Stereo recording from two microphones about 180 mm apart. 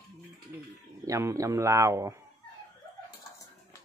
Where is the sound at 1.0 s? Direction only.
15° right (ahead or behind).